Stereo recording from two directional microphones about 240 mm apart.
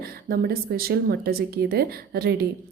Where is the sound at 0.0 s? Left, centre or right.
Right.